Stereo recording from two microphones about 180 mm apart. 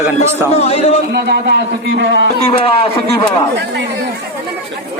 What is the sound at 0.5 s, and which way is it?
Speech, 35° left (ahead or behind).